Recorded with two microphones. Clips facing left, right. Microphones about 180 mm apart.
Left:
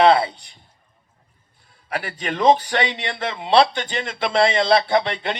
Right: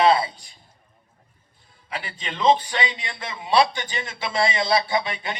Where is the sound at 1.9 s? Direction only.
60° left (ahead or behind).